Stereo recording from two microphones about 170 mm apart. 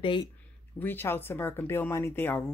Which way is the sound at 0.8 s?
10° left (ahead or behind).